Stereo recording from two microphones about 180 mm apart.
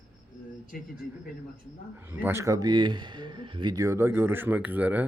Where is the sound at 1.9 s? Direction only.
10° right (ahead or behind).